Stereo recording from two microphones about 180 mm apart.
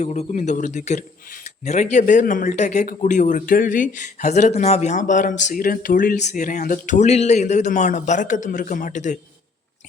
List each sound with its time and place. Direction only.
0.0 s a man's voice: 40° left (ahead or behind)